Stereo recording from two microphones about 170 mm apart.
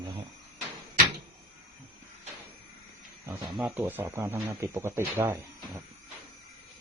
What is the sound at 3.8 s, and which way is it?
Speech, 10° right (ahead or behind).